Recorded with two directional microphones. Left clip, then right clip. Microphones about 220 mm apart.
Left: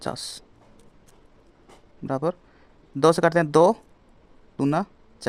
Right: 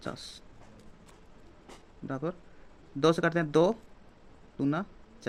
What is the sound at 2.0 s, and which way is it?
A man's voice, 50° left (ahead or behind).